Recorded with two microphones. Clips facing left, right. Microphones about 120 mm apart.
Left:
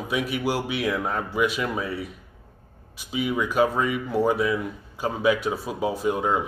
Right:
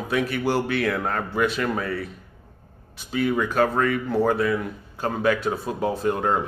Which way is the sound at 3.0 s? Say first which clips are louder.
Right 3 dB; 10° left (ahead or behind).